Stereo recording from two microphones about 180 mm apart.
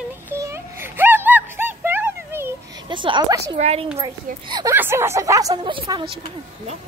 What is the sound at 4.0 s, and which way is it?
Speech, 25° right (ahead or behind).